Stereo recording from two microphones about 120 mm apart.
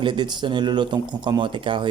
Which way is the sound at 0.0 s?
40° right (ahead or behind).